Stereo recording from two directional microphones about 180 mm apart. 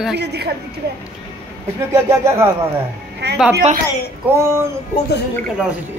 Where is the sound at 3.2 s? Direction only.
70° right (ahead or behind).